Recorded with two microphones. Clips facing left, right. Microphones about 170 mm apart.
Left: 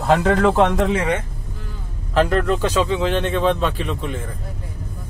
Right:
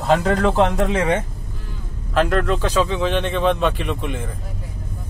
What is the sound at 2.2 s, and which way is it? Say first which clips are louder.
Speech: left 1 dB; 5° left (ahead or behind).